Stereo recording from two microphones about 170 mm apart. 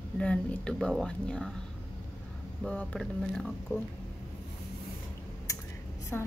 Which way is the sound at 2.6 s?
5° left (ahead or behind).